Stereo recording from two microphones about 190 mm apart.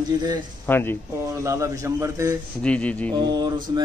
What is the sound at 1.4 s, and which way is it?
Speech, 15° right (ahead or behind).